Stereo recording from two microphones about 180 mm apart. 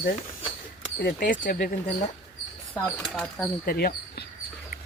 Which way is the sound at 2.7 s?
5° left (ahead or behind).